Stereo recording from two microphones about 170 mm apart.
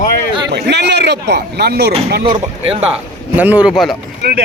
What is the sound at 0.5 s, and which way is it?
Speech, 85° right.